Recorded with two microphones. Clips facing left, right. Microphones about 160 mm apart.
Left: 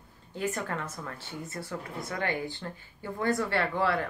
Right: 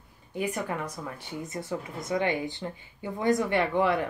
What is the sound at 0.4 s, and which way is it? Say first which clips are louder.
Speech: right 2 dB; 10° right (ahead or behind).